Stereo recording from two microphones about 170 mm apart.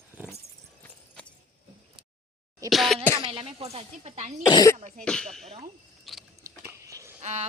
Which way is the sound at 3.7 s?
40° right (ahead or behind).